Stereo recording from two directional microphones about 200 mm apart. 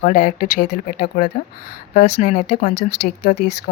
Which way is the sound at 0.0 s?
40° left (ahead or behind).